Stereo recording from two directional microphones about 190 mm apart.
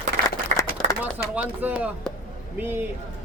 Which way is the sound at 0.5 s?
40° right (ahead or behind).